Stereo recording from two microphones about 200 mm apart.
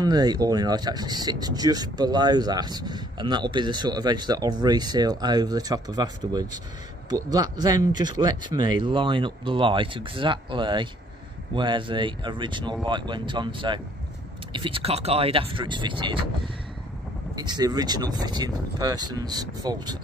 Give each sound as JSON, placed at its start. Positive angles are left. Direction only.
{"t": 0.0, "sound": "speech", "side_deg": -20}
{"t": 17.4, "sound": "speech", "side_deg": -20}